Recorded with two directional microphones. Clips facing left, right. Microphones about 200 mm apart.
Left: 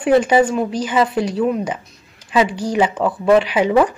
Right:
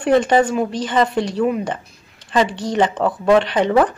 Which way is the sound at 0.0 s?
5° left (ahead or behind).